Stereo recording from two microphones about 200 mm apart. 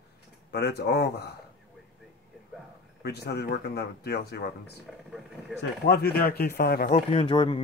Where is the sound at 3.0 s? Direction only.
55° left (ahead or behind).